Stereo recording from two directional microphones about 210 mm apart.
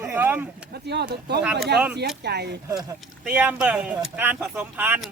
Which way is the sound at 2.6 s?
15° right (ahead or behind).